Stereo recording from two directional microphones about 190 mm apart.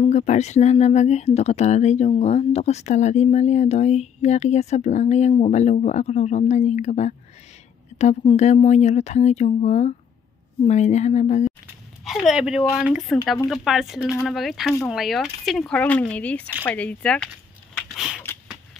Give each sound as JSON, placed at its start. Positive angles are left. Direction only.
{"t": 0.0, "sound": "speech", "side_deg": 35}
{"t": 12.0, "sound": "speech", "side_deg": 0}
{"t": 17.7, "sound": "a sound", "side_deg": -5}